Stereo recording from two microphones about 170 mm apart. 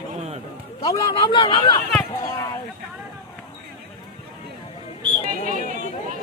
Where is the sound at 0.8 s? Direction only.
25° left (ahead or behind).